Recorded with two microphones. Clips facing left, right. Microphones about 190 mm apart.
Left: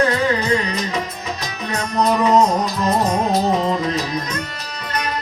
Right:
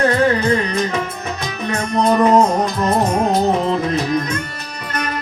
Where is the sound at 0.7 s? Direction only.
50° right (ahead or behind).